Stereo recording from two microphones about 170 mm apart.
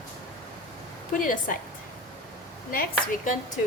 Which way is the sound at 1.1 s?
55° left (ahead or behind).